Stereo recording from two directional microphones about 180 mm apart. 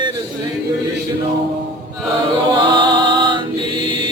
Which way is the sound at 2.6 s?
25° right (ahead or behind).